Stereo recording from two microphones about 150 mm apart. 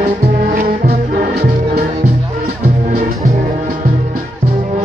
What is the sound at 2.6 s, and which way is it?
Music, 60° right (ahead or behind).